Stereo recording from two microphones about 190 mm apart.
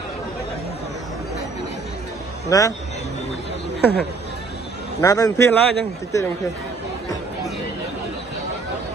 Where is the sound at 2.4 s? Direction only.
20° left (ahead or behind).